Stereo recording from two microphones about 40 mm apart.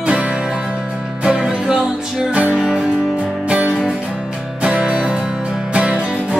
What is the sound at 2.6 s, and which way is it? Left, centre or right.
Music, centre.